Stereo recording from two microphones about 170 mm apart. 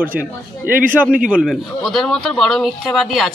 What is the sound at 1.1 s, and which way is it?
A man's voice, 5° right (ahead or behind).